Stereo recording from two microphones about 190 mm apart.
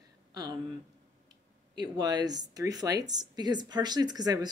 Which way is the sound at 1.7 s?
20° right (ahead or behind).